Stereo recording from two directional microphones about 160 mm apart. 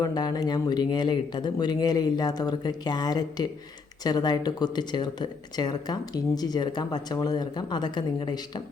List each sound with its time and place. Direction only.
0.0 s speech: 25° left (ahead or behind)